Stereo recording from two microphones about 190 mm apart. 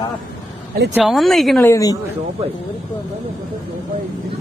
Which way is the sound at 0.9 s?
Centre (ahead or behind).